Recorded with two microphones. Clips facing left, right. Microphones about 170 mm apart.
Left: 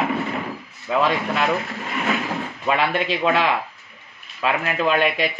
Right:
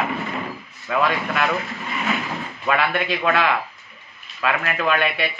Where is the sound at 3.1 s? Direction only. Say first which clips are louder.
Even; 25° left (ahead or behind).